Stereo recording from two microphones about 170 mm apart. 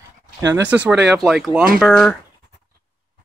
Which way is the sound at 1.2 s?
5° right (ahead or behind).